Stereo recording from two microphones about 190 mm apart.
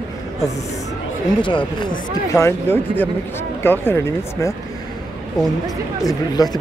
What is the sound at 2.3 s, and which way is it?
Speech, 15° left (ahead or behind).